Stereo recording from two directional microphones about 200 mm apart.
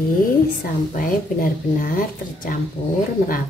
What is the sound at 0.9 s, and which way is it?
A woman's voice, 45° left (ahead or behind).